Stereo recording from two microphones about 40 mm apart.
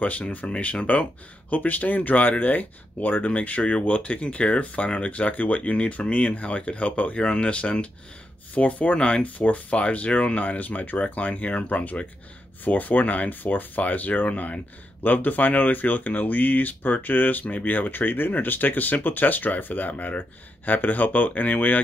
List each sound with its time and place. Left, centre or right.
0.5 s speech: left